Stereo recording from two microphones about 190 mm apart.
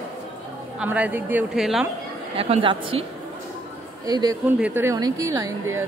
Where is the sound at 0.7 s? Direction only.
5° right (ahead or behind).